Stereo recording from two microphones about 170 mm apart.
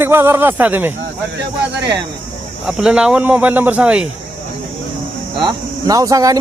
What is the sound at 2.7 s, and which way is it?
Speech, 5° right (ahead or behind).